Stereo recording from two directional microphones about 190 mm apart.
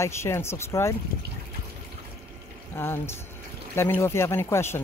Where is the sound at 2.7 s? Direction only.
10° left (ahead or behind).